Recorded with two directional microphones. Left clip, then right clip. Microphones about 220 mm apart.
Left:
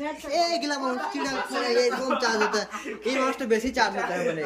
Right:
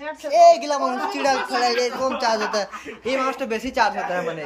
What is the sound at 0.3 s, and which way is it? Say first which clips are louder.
Speech: right 12 dB; 5° right (ahead or behind).